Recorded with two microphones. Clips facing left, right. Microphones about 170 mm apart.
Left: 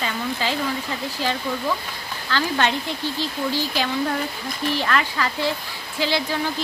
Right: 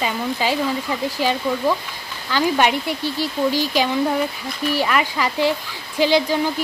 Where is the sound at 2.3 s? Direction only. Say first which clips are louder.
Right 4 dB; 15° right (ahead or behind).